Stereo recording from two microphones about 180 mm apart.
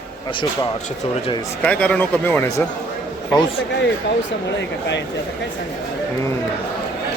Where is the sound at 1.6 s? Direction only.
5° left (ahead or behind).